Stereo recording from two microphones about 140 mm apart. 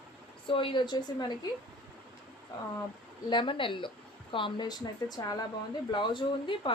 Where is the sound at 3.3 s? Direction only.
35° left (ahead or behind).